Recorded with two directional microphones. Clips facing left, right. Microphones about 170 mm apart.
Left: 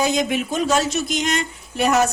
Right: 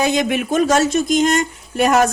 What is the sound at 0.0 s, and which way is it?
A woman's voice, 60° right (ahead or behind).